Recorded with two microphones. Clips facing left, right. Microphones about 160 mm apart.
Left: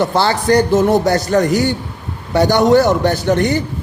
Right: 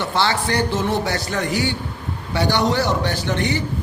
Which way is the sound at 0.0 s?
40° left (ahead or behind).